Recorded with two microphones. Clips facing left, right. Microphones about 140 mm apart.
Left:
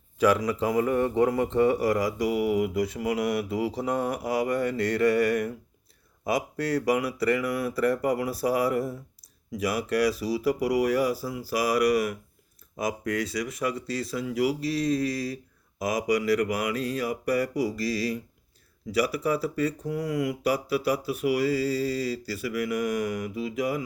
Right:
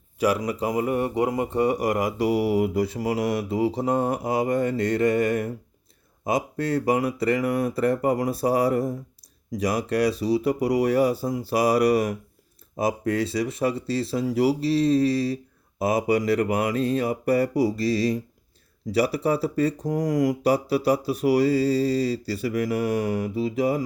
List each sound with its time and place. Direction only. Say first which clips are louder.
0.3 s speech: even; 20° right (ahead or behind)